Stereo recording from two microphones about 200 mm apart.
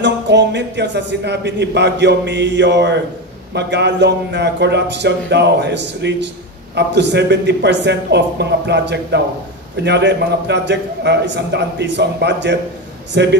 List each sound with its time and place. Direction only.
0.0 s a man's voice: 60° right (ahead or behind)